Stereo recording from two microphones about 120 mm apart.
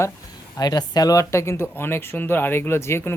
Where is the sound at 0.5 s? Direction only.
35° left (ahead or behind).